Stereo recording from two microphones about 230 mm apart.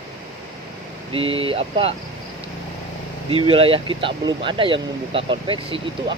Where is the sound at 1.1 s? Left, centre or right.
Right.